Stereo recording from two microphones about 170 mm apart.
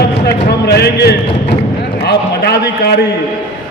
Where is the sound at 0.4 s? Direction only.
75° left (ahead or behind).